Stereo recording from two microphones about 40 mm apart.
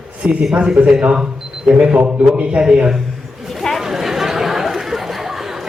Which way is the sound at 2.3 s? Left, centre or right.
Right.